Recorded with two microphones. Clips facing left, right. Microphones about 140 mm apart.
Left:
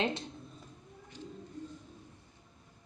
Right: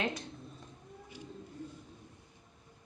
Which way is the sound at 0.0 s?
25° left (ahead or behind).